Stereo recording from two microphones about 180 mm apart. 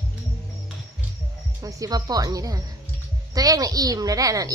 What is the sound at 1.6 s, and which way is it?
A woman's voice, 20° right (ahead or behind).